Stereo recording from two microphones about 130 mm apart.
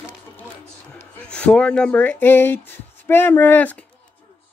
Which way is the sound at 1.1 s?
10° left (ahead or behind).